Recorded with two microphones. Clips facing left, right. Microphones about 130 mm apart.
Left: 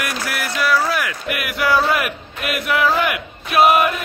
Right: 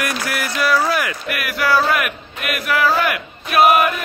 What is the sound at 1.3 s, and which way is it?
Speech, 20° left (ahead or behind).